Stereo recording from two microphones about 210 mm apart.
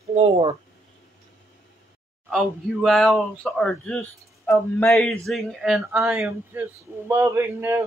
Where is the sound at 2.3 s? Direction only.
Centre (ahead or behind).